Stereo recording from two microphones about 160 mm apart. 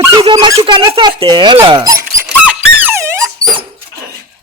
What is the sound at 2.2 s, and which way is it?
Dog, 10° right (ahead or behind).